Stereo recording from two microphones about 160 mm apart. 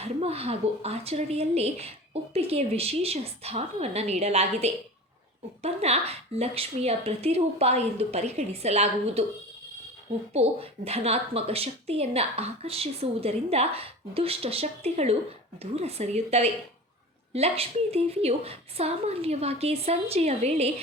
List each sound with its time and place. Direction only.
0.0 s a woman's voice: 40° right (ahead or behind)
10.3 s a woman's voice: 40° right (ahead or behind)